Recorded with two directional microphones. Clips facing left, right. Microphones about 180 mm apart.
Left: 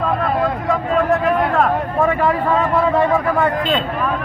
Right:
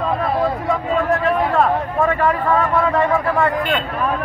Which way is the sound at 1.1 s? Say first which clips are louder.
Even; centre (ahead or behind).